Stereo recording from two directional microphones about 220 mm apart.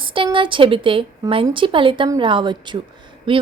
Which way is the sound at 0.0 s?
25° right (ahead or behind).